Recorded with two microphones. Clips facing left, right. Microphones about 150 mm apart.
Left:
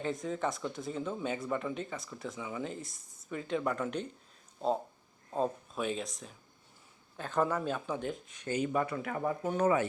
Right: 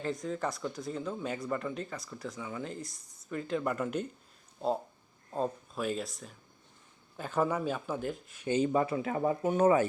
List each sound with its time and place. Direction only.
0.0 s speech: centre (ahead or behind)
5.3 s speech: centre (ahead or behind)
8.4 s speech: 25° right (ahead or behind)